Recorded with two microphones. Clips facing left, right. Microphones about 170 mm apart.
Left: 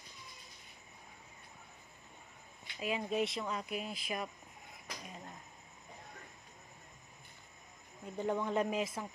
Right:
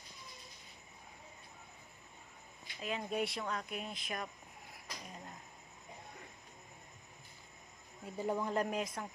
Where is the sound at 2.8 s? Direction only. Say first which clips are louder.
Left 3 dB; 5° left (ahead or behind).